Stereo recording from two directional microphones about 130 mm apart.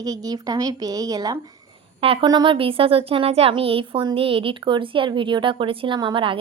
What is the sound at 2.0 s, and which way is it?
Speech, 45° right (ahead or behind).